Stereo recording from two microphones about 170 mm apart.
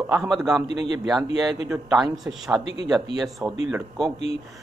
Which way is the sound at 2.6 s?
35° left (ahead or behind).